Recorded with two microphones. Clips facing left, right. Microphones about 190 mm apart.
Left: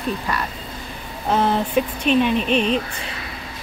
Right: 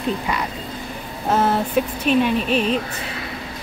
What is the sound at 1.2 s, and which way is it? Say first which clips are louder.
Speech: even; 5° right (ahead or behind).